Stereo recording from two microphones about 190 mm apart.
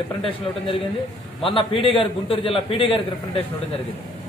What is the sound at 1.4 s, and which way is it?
A man's voice, 25° left (ahead or behind).